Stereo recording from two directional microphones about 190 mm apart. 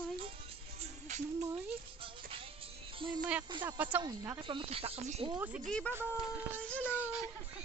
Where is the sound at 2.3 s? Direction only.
30° right (ahead or behind).